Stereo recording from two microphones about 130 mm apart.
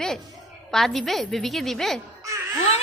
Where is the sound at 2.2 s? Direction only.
20° right (ahead or behind).